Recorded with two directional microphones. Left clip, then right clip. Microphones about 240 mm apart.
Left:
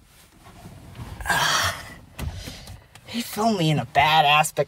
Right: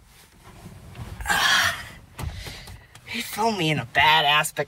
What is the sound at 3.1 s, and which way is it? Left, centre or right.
Speech, centre.